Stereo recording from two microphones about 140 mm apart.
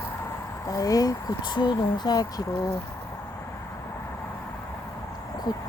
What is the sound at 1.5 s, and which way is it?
Speech, 30° left (ahead or behind).